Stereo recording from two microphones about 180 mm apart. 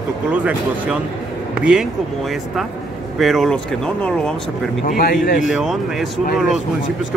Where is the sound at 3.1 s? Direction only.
Centre (ahead or behind).